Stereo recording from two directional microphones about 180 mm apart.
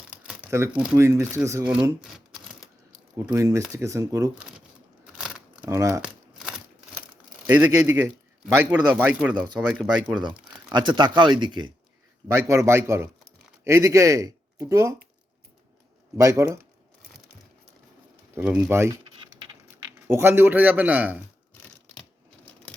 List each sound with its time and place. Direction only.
0.1 s crumpling: 10° right (ahead or behind)
0.8 s a man's voice: 15° right (ahead or behind)
1.7 s a sound: 5° right (ahead or behind)
3.2 s a man's voice: 15° right (ahead or behind)
5.1 s a sound: 5° right (ahead or behind)
5.6 s a man's voice: 15° right (ahead or behind)
7.5 s a man's voice: 10° right (ahead or behind)
10.2 s a man's voice: 25° right (ahead or behind)
16.1 s a man's voice: 15° right (ahead or behind)
18.3 s a man's voice: 10° right (ahead or behind)